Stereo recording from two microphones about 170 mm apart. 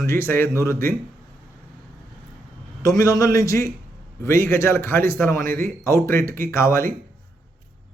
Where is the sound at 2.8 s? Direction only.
20° left (ahead or behind).